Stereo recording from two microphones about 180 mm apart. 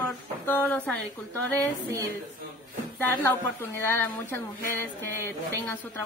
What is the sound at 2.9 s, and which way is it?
Speech, 10° left (ahead or behind).